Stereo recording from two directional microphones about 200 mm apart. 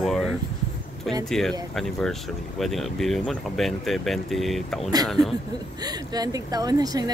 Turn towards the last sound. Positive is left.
turn(degrees=-20)  # may be behind; listen again after turning